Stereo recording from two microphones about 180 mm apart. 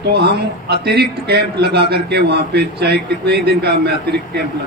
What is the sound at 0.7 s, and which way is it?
A man's voice, 65° right (ahead or behind).